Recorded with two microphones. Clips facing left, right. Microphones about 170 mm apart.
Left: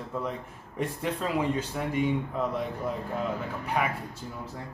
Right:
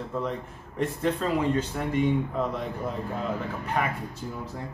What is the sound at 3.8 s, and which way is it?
Speech, 5° left (ahead or behind).